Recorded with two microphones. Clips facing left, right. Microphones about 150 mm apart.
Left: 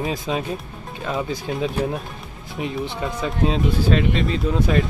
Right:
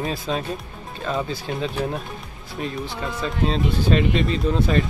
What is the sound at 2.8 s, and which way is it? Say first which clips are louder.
Speech: left 2 dB; 20° left (ahead or behind).